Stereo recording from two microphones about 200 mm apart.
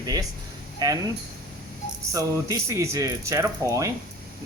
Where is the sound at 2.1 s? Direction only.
15° right (ahead or behind).